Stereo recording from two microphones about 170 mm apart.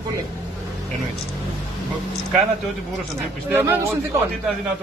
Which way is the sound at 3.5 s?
15° right (ahead or behind).